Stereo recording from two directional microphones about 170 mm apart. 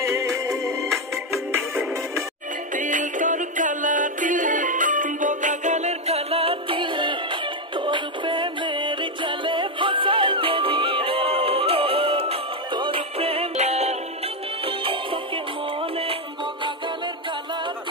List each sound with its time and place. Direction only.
0.0 s music: 20° right (ahead or behind)
2.7 s music: 50° right (ahead or behind); by 17.1 s 30° right (ahead or behind)